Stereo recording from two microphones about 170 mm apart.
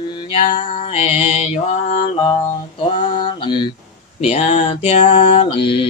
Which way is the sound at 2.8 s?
30° left (ahead or behind).